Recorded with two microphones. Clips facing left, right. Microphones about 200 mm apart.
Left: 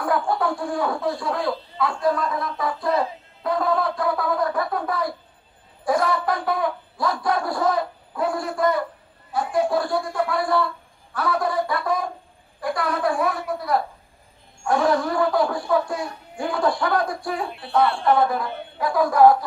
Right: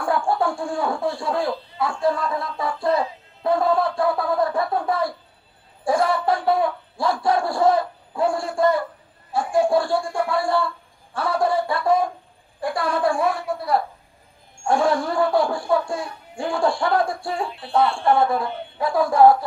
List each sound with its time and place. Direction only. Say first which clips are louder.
0.0 s speech: right 1 dB; 25° right (ahead or behind)